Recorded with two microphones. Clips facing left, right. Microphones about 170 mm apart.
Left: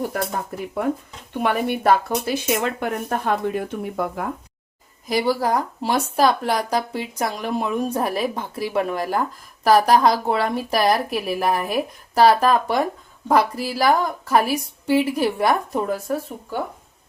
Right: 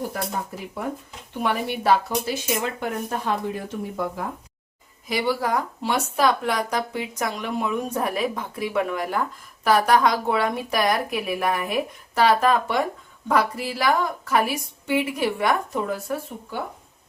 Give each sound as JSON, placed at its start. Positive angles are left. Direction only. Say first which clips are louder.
{"t": 1.3, "sound": "speech", "louder": "left 4 dB", "side_deg": 60}
{"t": 5.0, "sound": "a woman's voice", "louder": "left 3 dB", "side_deg": 40}